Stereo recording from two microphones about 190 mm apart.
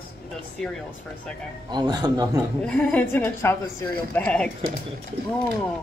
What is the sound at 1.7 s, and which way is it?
Speech, 20° right (ahead or behind).